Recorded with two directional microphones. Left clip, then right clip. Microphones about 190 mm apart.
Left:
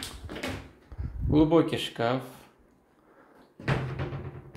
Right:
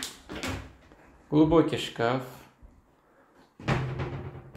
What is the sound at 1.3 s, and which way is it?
Speech, 15° left (ahead or behind).